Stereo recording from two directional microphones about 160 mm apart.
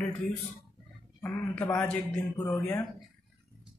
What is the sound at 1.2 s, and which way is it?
Speech, 15° left (ahead or behind).